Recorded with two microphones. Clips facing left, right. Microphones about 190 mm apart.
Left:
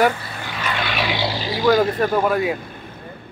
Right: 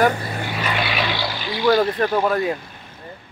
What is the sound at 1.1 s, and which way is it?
Vehicle, 25° left (ahead or behind).